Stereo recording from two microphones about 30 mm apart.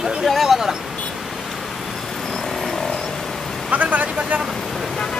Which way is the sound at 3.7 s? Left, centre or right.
Right.